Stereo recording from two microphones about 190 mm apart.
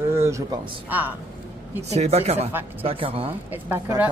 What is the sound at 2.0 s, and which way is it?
Speech, 35° right (ahead or behind).